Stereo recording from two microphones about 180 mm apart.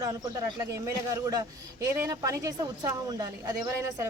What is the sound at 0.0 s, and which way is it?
A woman's voice, 20° right (ahead or behind).